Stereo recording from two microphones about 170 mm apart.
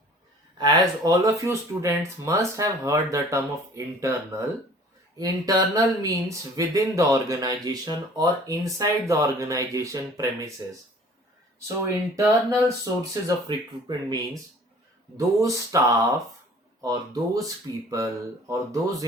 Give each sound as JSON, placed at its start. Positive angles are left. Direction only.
{"t": 0.6, "sound": "speech", "side_deg": -20}
{"t": 12.1, "sound": "speech", "side_deg": -20}
{"t": 15.4, "sound": "speech", "side_deg": -20}